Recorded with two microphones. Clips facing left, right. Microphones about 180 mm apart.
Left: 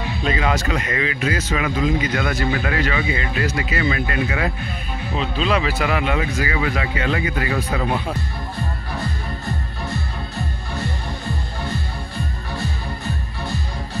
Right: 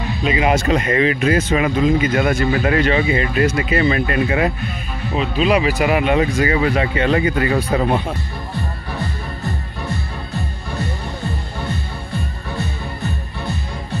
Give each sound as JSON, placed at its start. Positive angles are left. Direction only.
{"t": 0.2, "sound": "speech", "side_deg": -10}
{"t": 0.5, "sound": "speech", "side_deg": -25}
{"t": 5.1, "sound": "speech", "side_deg": -10}
{"t": 6.1, "sound": "speech", "side_deg": -35}